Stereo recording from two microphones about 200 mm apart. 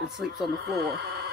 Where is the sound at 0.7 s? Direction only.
55° right (ahead or behind).